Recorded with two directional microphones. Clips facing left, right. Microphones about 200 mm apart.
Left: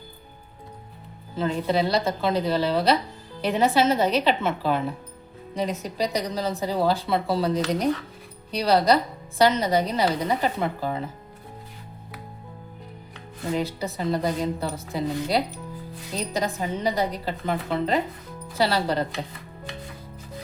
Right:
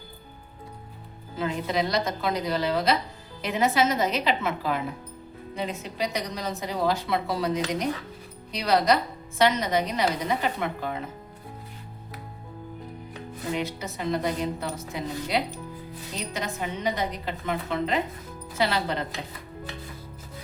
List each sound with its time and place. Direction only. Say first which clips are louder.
1.4 s a woman's voice: left 3 dB; 30° left (ahead or behind)
13.5 s a woman's voice: left 4 dB; 35° left (ahead or behind)